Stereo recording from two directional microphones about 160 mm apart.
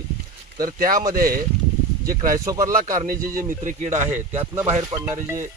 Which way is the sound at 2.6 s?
55° right (ahead or behind).